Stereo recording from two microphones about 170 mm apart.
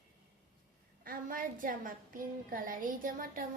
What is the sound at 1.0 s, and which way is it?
A woman's voice, 55° right (ahead or behind).